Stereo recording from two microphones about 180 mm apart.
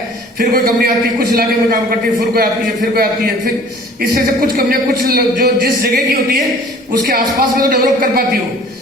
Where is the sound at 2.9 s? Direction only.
55° right (ahead or behind).